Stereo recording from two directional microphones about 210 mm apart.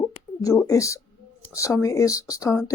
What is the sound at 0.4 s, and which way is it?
Speech, 15° left (ahead or behind).